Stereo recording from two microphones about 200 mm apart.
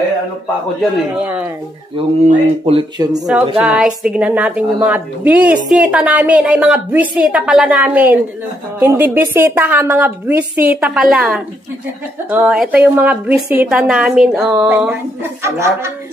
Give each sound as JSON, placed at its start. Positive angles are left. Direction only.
{"t": 1.1, "sound": "a woman's voice", "side_deg": -5}
{"t": 2.0, "sound": "speech", "side_deg": -30}
{"t": 3.5, "sound": "a woman's voice", "side_deg": -5}